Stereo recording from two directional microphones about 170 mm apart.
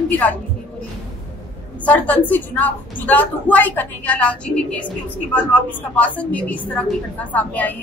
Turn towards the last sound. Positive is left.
turn(degrees=10)  # may be behind; listen again after turning